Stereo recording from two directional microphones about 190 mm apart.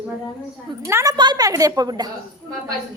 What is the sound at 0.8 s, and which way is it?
A woman's voice, 15° right (ahead or behind).